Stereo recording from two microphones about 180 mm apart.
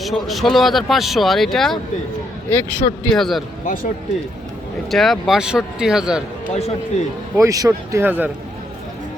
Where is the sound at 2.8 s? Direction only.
40° left (ahead or behind).